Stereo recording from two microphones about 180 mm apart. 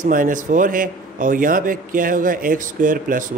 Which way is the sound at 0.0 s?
45° right (ahead or behind).